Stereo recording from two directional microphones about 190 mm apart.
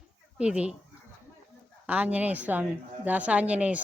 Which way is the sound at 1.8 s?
5° right (ahead or behind).